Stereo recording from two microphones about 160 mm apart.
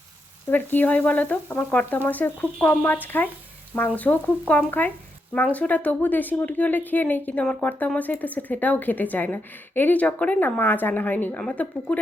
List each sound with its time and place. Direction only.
0.5 s speech: 10° left (ahead or behind)